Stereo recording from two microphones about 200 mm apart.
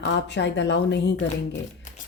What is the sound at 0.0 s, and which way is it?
A woman's voice, 60° left (ahead or behind).